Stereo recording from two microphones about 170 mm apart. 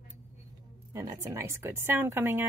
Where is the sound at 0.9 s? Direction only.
15° right (ahead or behind).